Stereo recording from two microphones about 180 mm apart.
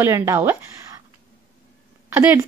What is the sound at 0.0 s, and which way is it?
Speech, 15° right (ahead or behind).